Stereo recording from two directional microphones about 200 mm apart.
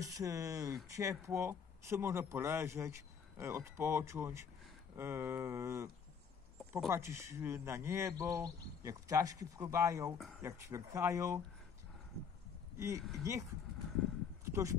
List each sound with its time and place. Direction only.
0.0 s speech: 15° right (ahead or behind)
6.6 s a sound: centre (ahead or behind)
6.9 s speech: 15° right (ahead or behind)
10.1 s speech: centre (ahead or behind)
10.4 s speech: 15° right (ahead or behind)
12.7 s speech: 15° right (ahead or behind)
14.4 s a sound: 15° right (ahead or behind)